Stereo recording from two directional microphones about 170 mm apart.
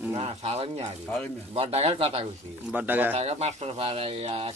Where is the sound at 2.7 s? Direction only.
10° right (ahead or behind).